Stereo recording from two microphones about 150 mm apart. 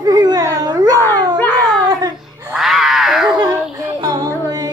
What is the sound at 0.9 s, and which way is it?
Dog, 15° left (ahead or behind).